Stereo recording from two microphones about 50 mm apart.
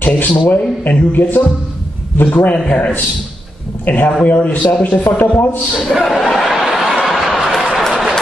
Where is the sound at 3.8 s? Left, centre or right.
Left.